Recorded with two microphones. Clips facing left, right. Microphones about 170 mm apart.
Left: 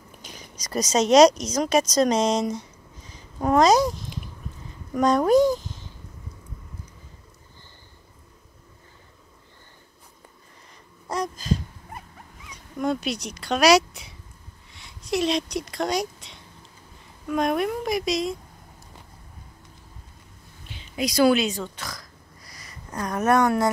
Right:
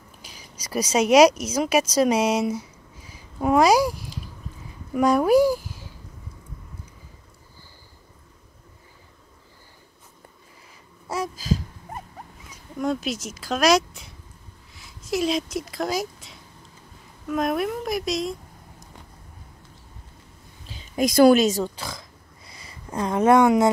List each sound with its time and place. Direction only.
0.2 s a child's voice: 10° right (ahead or behind)
11.1 s a sound: 5° right (ahead or behind)
12.7 s a woman's voice: centre (ahead or behind)
20.6 s speech: 40° right (ahead or behind)
22.5 s a sound: 30° right (ahead or behind)
22.9 s speech: 25° right (ahead or behind)